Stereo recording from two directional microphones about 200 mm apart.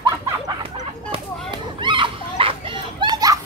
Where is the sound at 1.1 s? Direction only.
25° right (ahead or behind).